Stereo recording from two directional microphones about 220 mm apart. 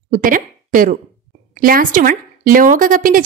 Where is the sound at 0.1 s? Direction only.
35° right (ahead or behind).